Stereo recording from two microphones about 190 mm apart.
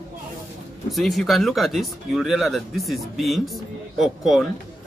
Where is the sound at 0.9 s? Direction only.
Centre (ahead or behind).